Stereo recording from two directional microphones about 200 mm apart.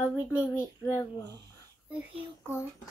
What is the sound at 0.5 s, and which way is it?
Speech, 15° left (ahead or behind).